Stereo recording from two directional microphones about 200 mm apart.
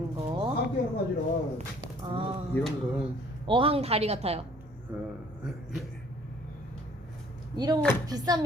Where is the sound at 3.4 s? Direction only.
25° right (ahead or behind).